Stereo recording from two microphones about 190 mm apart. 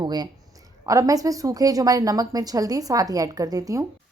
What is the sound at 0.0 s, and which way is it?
A woman's voice, 20° right (ahead or behind).